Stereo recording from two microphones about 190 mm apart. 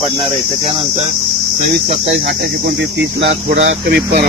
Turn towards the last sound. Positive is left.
turn(degrees=-60)  # may be behind; listen again after turning